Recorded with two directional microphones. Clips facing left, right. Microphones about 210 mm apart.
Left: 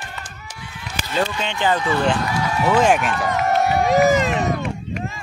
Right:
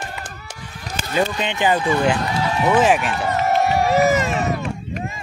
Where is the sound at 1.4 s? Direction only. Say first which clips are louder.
Right 2 dB; 15° right (ahead or behind).